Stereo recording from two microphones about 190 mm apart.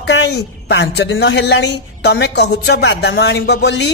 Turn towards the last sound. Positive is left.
turn(degrees=65)  # may be behind; listen again after turning